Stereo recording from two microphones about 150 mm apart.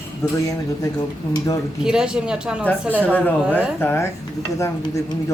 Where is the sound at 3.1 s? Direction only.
10° left (ahead or behind).